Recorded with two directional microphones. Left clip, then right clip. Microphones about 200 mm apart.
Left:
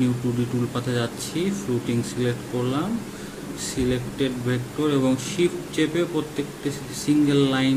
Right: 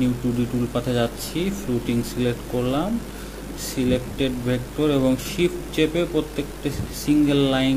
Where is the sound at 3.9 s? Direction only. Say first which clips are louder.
Right 4 dB; 15° right (ahead or behind).